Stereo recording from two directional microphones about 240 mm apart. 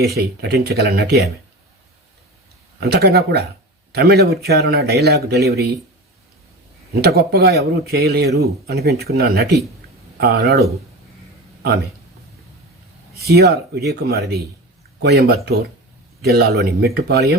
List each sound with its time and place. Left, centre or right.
0.1 s a man's voice: right
2.8 s a man's voice: right
6.9 s a man's voice: right
13.1 s a man's voice: right